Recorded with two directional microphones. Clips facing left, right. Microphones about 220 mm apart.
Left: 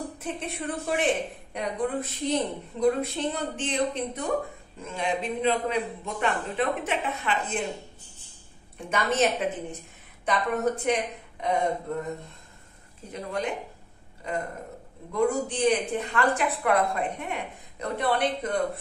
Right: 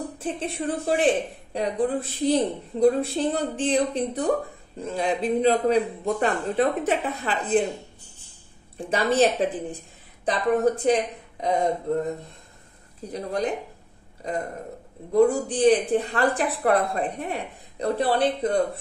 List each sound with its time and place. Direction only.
0.2 s a woman's voice: 30° right (ahead or behind)
8.7 s a woman's voice: 35° right (ahead or behind)
13.1 s a woman's voice: 35° right (ahead or behind)
15.1 s a woman's voice: 35° right (ahead or behind)